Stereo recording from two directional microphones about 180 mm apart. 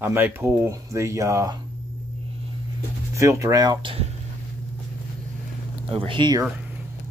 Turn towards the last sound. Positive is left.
turn(degrees=-25)  # may be behind; listen again after turning